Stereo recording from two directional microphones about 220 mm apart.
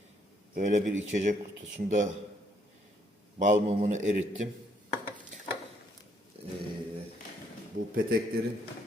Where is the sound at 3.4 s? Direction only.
35° right (ahead or behind).